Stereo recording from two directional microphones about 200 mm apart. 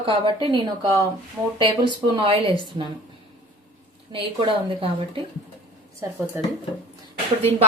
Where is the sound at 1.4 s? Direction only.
15° right (ahead or behind).